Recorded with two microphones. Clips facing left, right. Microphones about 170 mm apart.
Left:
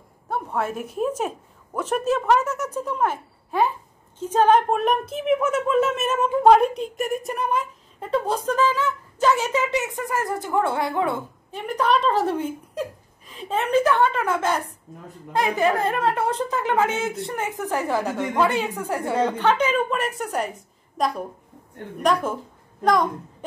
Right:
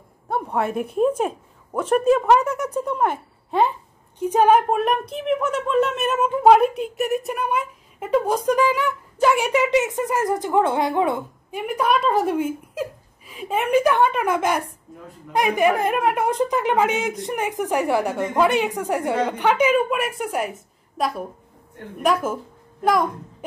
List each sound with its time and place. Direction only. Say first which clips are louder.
0.7 s a woman's voice: right 5 dB; 5° left (ahead or behind)
2.0 s a woman's voice: right 3 dB; 10° right (ahead or behind)
4.2 s a woman's voice: right 1 dB; 10° right (ahead or behind)